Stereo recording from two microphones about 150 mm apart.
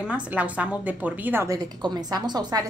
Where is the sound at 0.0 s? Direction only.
10° right (ahead or behind).